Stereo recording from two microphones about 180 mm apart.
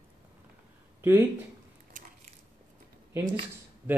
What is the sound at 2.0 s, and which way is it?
Biting, 45° right (ahead or behind).